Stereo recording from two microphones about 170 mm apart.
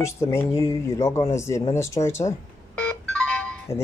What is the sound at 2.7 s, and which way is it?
Ringtone, 5° left (ahead or behind).